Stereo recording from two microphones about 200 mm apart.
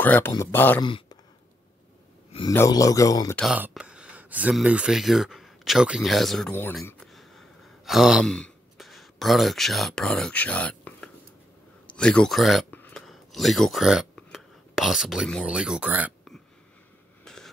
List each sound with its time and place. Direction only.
0.0 s speech: 10° left (ahead or behind)
0.8 s speech: 25° left (ahead or behind)
2.5 s speech: 15° left (ahead or behind)
3.3 s speech: 5° right (ahead or behind)
17.2 s a sound: centre (ahead or behind)